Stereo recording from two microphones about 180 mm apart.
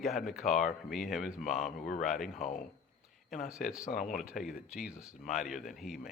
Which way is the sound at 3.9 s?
50° left (ahead or behind).